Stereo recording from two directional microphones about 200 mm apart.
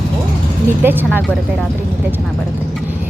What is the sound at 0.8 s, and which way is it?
Speech, 10° right (ahead or behind).